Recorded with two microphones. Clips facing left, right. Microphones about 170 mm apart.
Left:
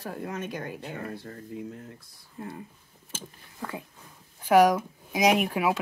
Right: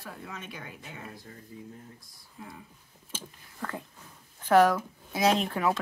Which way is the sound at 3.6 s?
10° left (ahead or behind).